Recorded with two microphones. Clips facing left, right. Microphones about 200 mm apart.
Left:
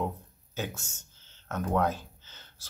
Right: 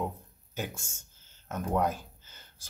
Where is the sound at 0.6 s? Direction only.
10° right (ahead or behind).